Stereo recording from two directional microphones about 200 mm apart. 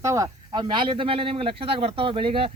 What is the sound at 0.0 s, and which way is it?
Speech, 15° right (ahead or behind).